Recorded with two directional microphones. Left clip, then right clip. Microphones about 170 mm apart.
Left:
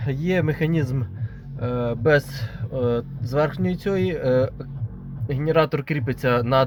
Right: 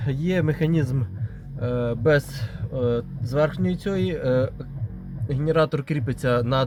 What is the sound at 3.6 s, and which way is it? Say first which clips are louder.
Speech: left 2 dB; 5° left (ahead or behind).